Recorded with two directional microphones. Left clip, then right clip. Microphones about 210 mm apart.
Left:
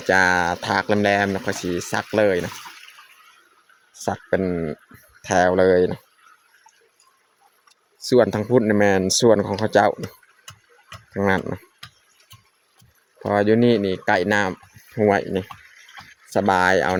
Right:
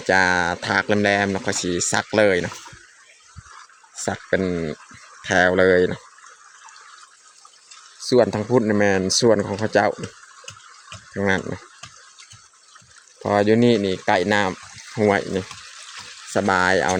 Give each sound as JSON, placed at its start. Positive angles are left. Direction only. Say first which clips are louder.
{"t": 0.0, "sound": "speech", "louder": "even", "side_deg": 0}
{"t": 3.9, "sound": "speech", "louder": "even", "side_deg": 0}
{"t": 8.0, "sound": "speech", "louder": "even", "side_deg": 5}
{"t": 10.0, "sound": "tick-tock", "louder": "right 1 dB", "side_deg": 40}
{"t": 11.1, "sound": "speech", "louder": "left 1 dB", "side_deg": 5}
{"t": 13.2, "sound": "speech", "louder": "right 1 dB", "side_deg": 0}